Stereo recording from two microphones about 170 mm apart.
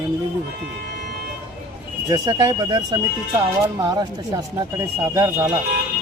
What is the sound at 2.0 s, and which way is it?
Speech, 25° right (ahead or behind).